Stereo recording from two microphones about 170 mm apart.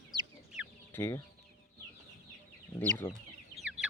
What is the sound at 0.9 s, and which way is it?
Speech, 15° left (ahead or behind).